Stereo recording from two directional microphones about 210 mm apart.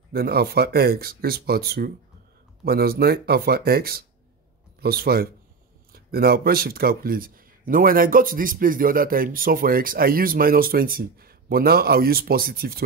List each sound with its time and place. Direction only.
0.1 s speech: 50° right (ahead or behind)